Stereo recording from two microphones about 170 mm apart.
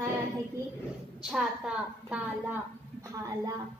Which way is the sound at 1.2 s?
5° right (ahead or behind).